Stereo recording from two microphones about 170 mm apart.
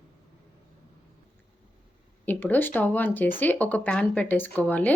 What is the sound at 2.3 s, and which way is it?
Speech, 10° left (ahead or behind).